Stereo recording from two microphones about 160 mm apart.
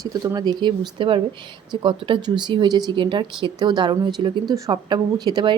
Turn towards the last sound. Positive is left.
turn(degrees=-30)  # may be behind; listen again after turning